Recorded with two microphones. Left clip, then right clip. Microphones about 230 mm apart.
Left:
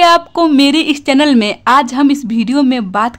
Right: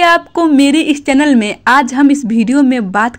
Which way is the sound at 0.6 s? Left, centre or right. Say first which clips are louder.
Even; centre.